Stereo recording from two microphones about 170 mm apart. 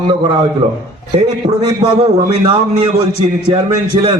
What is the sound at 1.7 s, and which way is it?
A man's voice, 25° right (ahead or behind).